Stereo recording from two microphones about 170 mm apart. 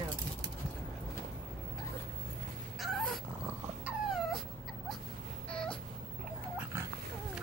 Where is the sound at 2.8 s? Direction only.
Centre (ahead or behind).